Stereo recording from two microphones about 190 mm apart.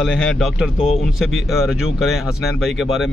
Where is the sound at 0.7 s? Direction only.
30° left (ahead or behind).